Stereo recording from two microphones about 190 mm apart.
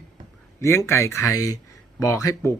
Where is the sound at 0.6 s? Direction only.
15° left (ahead or behind).